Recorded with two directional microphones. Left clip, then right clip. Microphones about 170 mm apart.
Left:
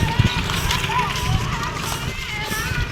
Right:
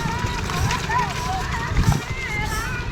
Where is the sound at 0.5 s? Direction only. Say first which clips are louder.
Even; 55° right (ahead or behind).